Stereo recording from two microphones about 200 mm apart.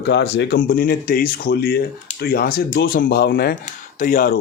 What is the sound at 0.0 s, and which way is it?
Speech, 60° left (ahead or behind).